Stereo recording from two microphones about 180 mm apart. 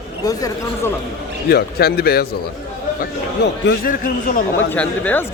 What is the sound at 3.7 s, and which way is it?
Speech, 50° left (ahead or behind).